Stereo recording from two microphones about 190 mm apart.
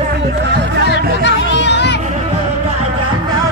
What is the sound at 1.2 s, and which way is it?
Music, 65° left (ahead or behind).